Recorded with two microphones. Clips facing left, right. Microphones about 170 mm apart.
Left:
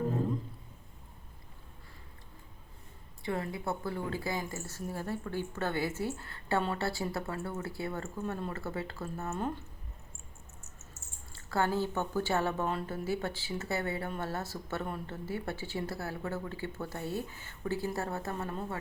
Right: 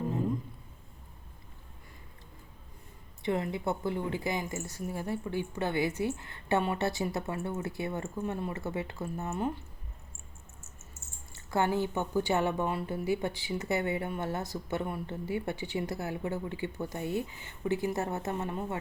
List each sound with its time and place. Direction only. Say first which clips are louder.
3.2 s speech: right 4 dB; 20° right (ahead or behind)
11.3 s speech: right 2 dB; 20° right (ahead or behind)